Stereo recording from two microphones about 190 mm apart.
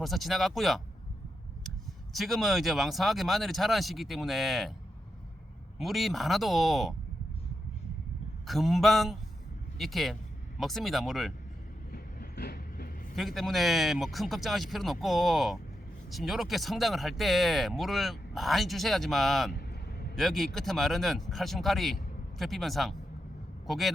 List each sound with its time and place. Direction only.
0.0 s speech: centre (ahead or behind)
2.1 s speech: centre (ahead or behind)
5.8 s speech: centre (ahead or behind)
8.4 s speech: centre (ahead or behind)
11.9 s train: 50° left (ahead or behind)
13.1 s speech: centre (ahead or behind)
19.5 s vehicle: 55° left (ahead or behind)
20.1 s speech: centre (ahead or behind)